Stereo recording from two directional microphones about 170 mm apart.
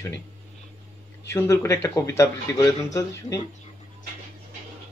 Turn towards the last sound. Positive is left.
turn(degrees=20)  # may be behind; listen again after turning